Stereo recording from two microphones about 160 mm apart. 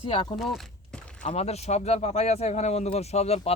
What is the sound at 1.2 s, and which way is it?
Speech, 40° left (ahead or behind).